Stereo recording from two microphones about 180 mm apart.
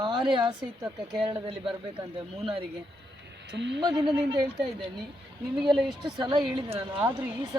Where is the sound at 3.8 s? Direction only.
20° right (ahead or behind).